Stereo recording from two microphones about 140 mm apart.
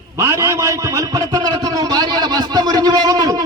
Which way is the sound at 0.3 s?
20° right (ahead or behind).